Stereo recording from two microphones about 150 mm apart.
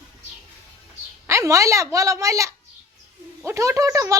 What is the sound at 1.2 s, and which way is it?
A woman's voice, 20° right (ahead or behind).